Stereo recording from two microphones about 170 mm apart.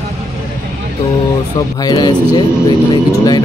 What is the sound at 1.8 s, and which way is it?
Speech, 20° left (ahead or behind).